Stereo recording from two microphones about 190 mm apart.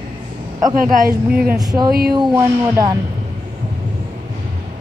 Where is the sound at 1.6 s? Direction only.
20° right (ahead or behind).